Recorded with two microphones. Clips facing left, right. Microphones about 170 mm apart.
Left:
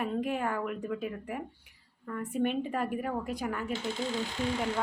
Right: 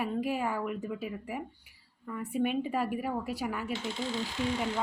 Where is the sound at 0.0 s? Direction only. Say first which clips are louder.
Even; 5° right (ahead or behind).